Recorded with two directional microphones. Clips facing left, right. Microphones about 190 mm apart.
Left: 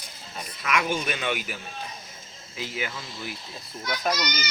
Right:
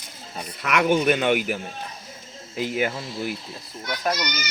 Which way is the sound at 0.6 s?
65° right (ahead or behind).